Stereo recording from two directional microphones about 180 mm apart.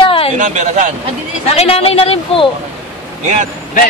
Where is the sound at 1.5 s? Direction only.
35° left (ahead or behind).